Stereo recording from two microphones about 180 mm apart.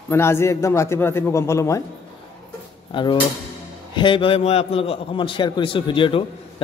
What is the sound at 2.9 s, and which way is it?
A man's voice, 25° left (ahead or behind).